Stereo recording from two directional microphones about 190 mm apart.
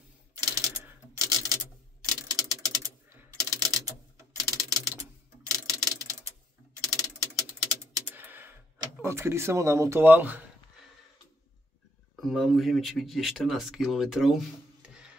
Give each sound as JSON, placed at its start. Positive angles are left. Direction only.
{"t": 0.6, "sound": "typewriter", "side_deg": -20}
{"t": 3.2, "sound": "typing", "side_deg": -20}
{"t": 4.5, "sound": "typewriter", "side_deg": -20}
{"t": 5.7, "sound": "ratchet", "side_deg": -20}
{"t": 6.8, "sound": "typewriter", "side_deg": -20}
{"t": 12.2, "sound": "speech", "side_deg": 0}